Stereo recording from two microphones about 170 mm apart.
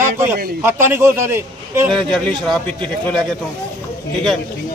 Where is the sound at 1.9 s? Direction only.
5° left (ahead or behind).